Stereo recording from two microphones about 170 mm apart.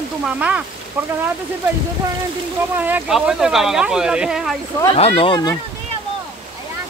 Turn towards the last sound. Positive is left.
turn(degrees=25)  # may be behind; listen again after turning